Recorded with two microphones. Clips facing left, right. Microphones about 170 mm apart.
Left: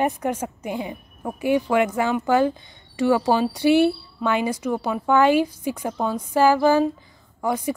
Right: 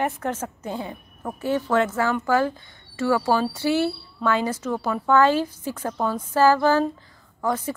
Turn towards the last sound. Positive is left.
turn(degrees=15)  # may be behind; listen again after turning